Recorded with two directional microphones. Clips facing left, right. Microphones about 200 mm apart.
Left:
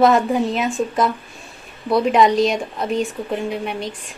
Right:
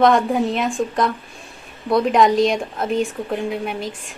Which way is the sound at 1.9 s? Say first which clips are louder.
Even; centre (ahead or behind).